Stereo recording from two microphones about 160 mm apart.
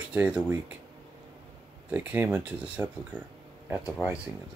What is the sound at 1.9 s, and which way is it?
Speech, 10° right (ahead or behind).